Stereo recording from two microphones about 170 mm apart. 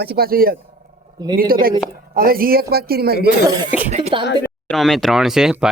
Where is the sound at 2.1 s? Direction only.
60° right (ahead or behind).